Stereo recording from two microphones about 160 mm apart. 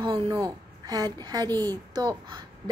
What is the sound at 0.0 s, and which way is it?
A woman's voice, 30° right (ahead or behind).